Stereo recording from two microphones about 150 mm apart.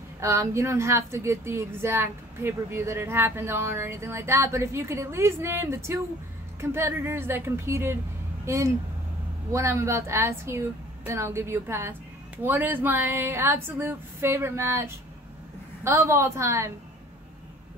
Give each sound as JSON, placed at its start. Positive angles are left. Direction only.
{"t": 0.2, "sound": "a woman's voice", "side_deg": -20}